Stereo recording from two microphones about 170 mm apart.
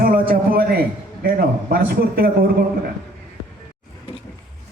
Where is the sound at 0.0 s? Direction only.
55° right (ahead or behind).